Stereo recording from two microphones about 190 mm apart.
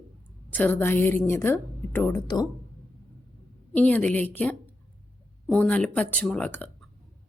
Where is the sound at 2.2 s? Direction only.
20° left (ahead or behind).